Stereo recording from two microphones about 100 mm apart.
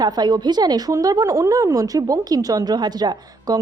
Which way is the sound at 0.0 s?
45° right (ahead or behind).